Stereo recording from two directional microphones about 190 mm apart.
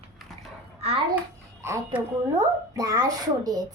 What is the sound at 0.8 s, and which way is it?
Speech, 30° right (ahead or behind).